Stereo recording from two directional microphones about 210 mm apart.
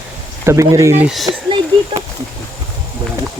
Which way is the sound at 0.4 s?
15° right (ahead or behind).